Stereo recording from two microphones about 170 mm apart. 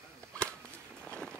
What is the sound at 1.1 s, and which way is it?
Run, 5° left (ahead or behind).